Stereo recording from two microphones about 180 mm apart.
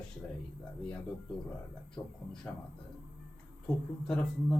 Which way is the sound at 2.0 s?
20° left (ahead or behind).